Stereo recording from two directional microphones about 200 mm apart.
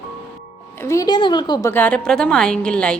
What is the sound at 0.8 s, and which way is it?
Speech, 15° left (ahead or behind).